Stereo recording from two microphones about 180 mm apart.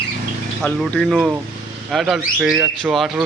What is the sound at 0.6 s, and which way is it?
Speech, 5° left (ahead or behind).